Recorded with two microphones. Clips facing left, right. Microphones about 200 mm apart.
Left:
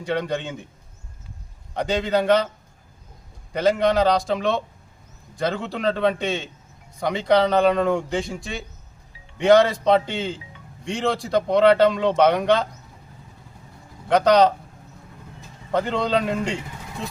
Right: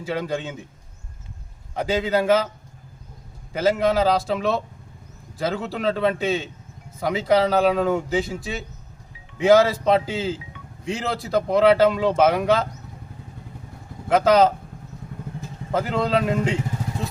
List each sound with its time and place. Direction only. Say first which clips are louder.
0.0 s speech: left 1 dB; 5° right (ahead or behind)
1.7 s speech: even; 5° right (ahead or behind)
3.5 s speech: left 1 dB; 5° right (ahead or behind)
14.1 s speech: even; 5° right (ahead or behind)
15.7 s speech: even; 5° right (ahead or behind)